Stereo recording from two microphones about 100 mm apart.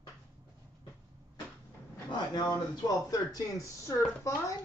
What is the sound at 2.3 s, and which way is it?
Speech, 40° left (ahead or behind).